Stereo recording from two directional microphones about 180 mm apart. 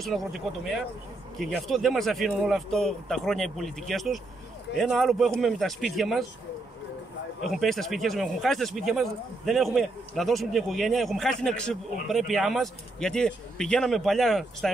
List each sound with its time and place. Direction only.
0.0 s speech: centre (ahead or behind)
7.4 s speech: centre (ahead or behind)